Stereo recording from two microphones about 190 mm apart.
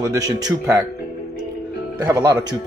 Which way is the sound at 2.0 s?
20° right (ahead or behind).